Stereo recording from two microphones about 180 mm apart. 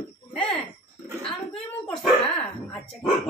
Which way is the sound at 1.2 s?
35° left (ahead or behind).